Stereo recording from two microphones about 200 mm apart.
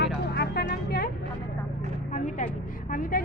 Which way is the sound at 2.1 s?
40° left (ahead or behind).